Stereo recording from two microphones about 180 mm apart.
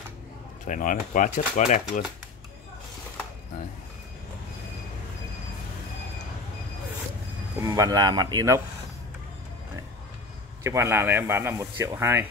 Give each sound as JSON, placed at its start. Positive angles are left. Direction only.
{"t": 0.7, "sound": "speech", "side_deg": 45}
{"t": 7.6, "sound": "speech", "side_deg": -20}
{"t": 10.6, "sound": "speech", "side_deg": -15}